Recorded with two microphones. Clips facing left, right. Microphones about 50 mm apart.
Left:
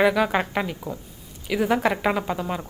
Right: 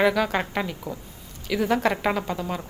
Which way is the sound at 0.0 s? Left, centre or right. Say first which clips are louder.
Left 2 dB; centre.